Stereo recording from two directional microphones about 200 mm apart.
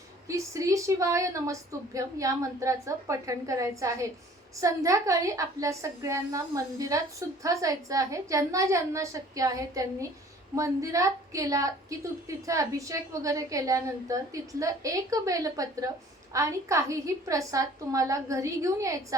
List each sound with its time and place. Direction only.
0.3 s a woman's voice: 15° right (ahead or behind)